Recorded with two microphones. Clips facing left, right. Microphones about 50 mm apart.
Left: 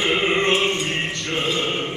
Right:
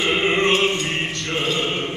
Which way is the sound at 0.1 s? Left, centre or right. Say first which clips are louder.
Right 2 dB; centre.